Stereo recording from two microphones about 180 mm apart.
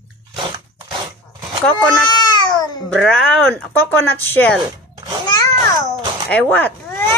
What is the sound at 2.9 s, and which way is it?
Speech, 5° left (ahead or behind).